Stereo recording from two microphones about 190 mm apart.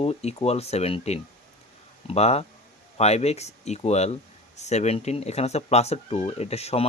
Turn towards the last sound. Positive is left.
turn(degrees=35)  # may be behind; listen again after turning